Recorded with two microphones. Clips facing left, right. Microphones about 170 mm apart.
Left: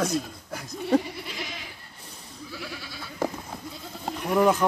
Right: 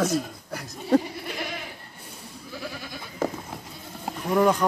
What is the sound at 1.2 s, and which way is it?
Goat, 55° right (ahead or behind).